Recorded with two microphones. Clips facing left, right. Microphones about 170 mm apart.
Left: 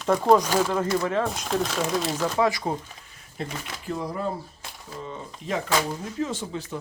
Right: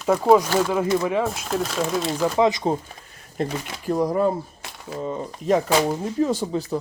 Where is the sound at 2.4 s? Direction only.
20° right (ahead or behind).